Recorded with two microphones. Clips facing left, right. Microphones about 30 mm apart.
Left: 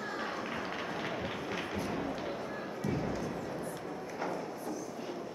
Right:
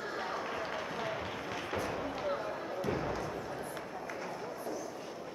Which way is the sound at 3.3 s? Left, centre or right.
Centre.